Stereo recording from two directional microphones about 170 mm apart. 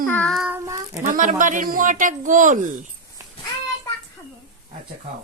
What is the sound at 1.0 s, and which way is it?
Speech, 50° right (ahead or behind).